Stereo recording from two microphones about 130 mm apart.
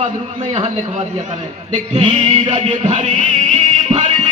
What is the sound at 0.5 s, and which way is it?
A man's voice, 55° right (ahead or behind).